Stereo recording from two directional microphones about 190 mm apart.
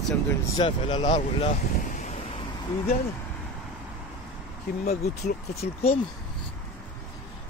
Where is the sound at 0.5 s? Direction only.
25° left (ahead or behind).